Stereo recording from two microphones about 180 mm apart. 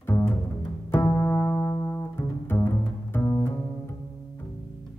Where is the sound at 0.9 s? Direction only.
15° left (ahead or behind).